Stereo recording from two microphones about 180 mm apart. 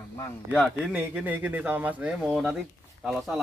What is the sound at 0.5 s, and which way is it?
Speech, 5° right (ahead or behind).